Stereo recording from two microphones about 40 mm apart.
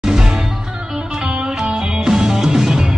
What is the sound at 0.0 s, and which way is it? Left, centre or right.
Music, centre.